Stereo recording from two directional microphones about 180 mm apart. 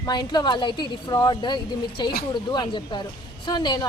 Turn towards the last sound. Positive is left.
turn(degrees=25)  # may be behind; listen again after turning